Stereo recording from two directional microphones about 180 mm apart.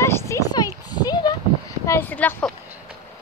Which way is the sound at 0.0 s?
15° left (ahead or behind).